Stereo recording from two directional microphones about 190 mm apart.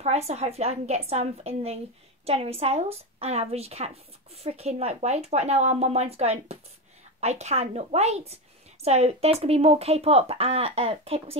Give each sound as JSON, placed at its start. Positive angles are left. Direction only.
{"t": 0.0, "sound": "a woman's voice", "side_deg": -35}